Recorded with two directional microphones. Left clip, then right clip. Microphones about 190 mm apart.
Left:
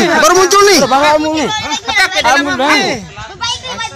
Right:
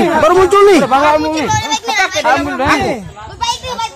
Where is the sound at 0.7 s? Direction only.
40° left (ahead or behind).